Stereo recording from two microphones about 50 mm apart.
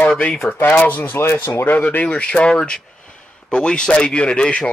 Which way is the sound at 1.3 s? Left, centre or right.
Left.